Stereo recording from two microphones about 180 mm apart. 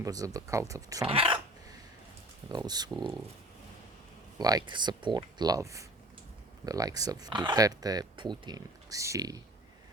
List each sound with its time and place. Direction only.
0.0 s speech: 20° right (ahead or behind)
1.0 s a sound: 30° right (ahead or behind)
2.5 s speech: 20° right (ahead or behind)
4.4 s speech: 20° right (ahead or behind)